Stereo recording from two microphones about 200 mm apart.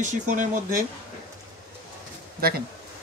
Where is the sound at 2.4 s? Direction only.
50° right (ahead or behind).